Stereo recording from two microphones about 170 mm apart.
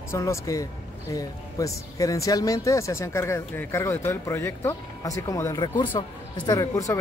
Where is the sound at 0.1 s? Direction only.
20° left (ahead or behind).